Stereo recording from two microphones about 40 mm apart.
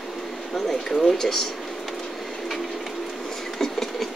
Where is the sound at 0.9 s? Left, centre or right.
Centre.